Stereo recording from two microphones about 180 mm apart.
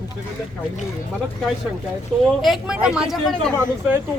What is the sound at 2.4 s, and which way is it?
Speech, 5° right (ahead or behind).